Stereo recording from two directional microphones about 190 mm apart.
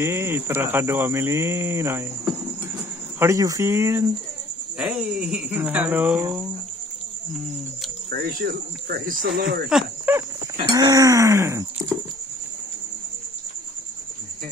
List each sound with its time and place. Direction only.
0.0 s speech: 15° right (ahead or behind)
4.7 s speech: 5° right (ahead or behind)
8.1 s speech: 50° right (ahead or behind)
9.7 s speech: 5° right (ahead or behind)
10.7 s speech: 20° right (ahead or behind)